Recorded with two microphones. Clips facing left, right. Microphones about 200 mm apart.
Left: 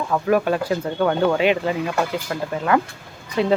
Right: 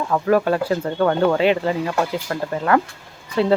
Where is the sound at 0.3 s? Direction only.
15° left (ahead or behind).